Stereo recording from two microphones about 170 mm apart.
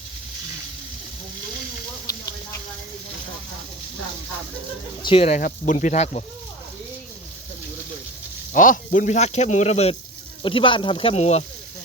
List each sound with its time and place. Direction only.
2.0 s a sound: 20° left (ahead or behind)
5.0 s speech: 40° left (ahead or behind)
8.5 s speech: 50° left (ahead or behind)